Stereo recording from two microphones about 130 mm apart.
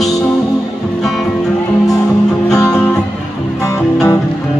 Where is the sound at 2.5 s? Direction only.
25° left (ahead or behind).